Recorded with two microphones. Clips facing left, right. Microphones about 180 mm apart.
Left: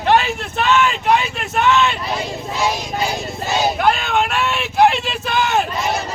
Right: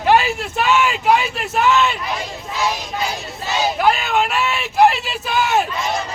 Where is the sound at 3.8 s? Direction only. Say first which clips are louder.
Even; 5° right (ahead or behind).